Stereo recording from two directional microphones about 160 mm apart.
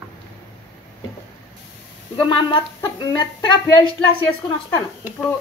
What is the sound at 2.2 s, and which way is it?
Speech, 30° left (ahead or behind).